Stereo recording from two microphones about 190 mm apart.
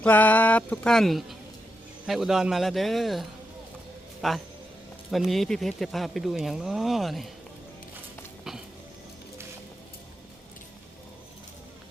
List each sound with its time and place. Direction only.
0.0 s speech: 10° left (ahead or behind)